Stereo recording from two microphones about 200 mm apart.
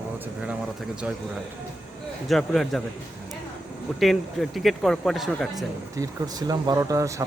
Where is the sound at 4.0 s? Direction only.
Centre (ahead or behind).